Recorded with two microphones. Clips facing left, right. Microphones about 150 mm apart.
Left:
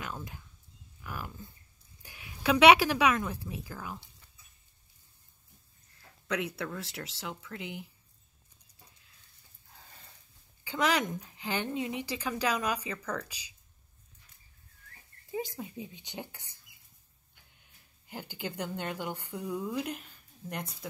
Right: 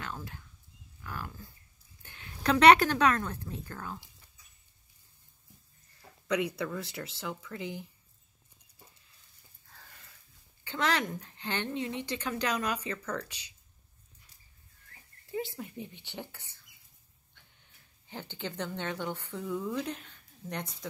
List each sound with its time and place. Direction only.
0.0 s a sound: 15° left (ahead or behind)
1.0 s speech: 15° left (ahead or behind)
5.9 s speech: centre (ahead or behind)
10.6 s a woman's voice: 10° left (ahead or behind)
15.3 s a woman's voice: 15° left (ahead or behind)
18.0 s a woman's voice: 10° left (ahead or behind)